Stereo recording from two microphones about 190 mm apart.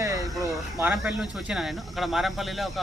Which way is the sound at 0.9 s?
Centre (ahead or behind).